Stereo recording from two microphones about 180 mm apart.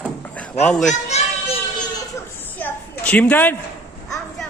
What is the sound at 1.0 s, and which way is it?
Children playing, 35° left (ahead or behind).